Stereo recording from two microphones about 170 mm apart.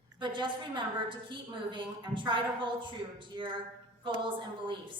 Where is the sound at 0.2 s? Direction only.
30° right (ahead or behind).